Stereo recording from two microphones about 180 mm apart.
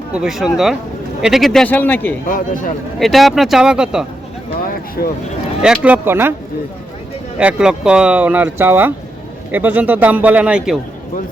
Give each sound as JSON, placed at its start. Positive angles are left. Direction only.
{"t": 0.1, "sound": "a man's voice", "side_deg": -5}
{"t": 2.2, "sound": "a man's voice", "side_deg": 50}
{"t": 3.0, "sound": "speech", "side_deg": 0}
{"t": 4.7, "sound": "speech", "side_deg": 55}
{"t": 5.6, "sound": "speech", "side_deg": -5}
{"t": 7.3, "sound": "speech", "side_deg": -5}